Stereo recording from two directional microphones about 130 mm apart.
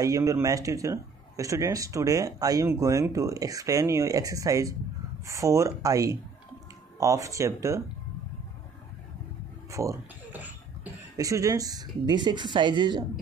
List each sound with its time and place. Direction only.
0.0 s speech: 25° right (ahead or behind)
9.7 s speech: 25° right (ahead or behind)
10.3 s cough: 15° right (ahead or behind)
11.1 s speech: 25° right (ahead or behind)